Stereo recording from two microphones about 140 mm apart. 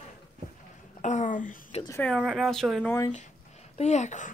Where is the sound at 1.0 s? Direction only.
60° left (ahead or behind).